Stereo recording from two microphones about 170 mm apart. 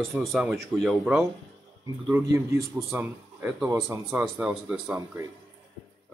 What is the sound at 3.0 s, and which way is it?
Speech, 10° right (ahead or behind).